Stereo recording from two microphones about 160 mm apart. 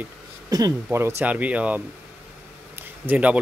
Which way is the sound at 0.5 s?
25° right (ahead or behind).